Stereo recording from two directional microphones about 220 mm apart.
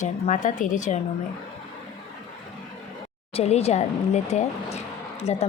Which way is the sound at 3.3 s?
30° left (ahead or behind).